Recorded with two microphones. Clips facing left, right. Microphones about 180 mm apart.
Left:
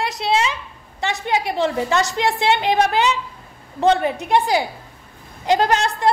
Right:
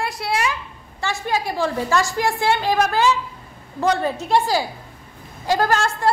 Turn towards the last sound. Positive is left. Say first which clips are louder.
# left 1 dB
turn(degrees=20)  # may be behind; listen again after turning